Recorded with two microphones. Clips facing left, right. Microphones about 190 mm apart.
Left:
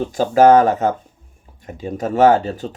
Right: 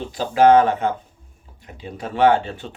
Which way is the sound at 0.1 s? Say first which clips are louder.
Left 2 dB; 45° left (ahead or behind).